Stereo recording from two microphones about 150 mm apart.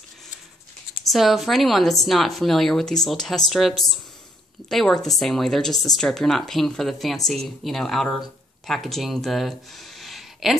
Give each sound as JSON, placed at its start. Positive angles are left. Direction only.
{"t": 1.0, "sound": "speech", "side_deg": 0}